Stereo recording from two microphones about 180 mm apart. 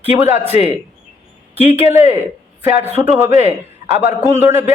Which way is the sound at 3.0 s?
15° right (ahead or behind).